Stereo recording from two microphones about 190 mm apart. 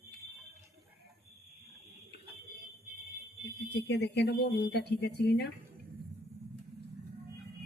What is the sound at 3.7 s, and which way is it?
Speech, 60° left (ahead or behind).